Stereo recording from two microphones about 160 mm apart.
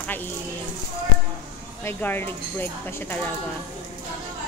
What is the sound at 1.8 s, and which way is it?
Speech, 15° left (ahead or behind).